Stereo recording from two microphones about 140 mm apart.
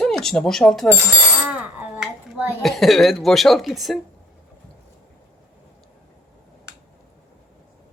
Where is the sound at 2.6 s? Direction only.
Centre (ahead or behind).